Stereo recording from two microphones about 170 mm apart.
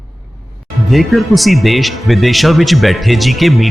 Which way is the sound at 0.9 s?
Centre (ahead or behind).